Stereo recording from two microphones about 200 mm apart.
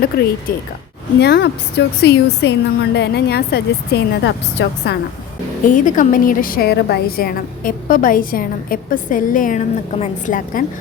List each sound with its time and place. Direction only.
0.1 s a woman's voice: 50° left (ahead or behind)
5.6 s a woman's voice: 40° left (ahead or behind)